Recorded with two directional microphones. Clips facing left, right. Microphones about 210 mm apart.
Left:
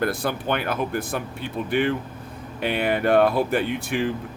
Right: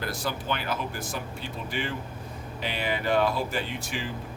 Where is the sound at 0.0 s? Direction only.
55° left (ahead or behind).